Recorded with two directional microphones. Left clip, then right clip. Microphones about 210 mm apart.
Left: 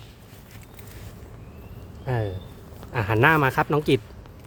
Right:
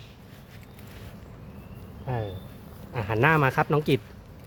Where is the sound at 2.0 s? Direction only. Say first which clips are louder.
Left 4 dB; 50° left (ahead or behind).